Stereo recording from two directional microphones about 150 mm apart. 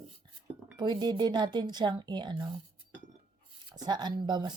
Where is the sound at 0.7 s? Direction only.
30° right (ahead or behind).